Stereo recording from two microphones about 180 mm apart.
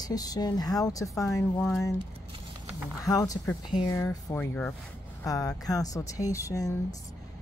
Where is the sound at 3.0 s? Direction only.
20° left (ahead or behind).